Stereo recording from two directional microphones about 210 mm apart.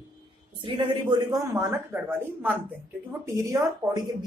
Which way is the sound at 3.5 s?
20° right (ahead or behind).